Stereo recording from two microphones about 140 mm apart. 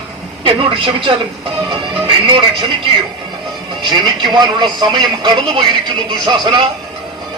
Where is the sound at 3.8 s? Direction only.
30° right (ahead or behind).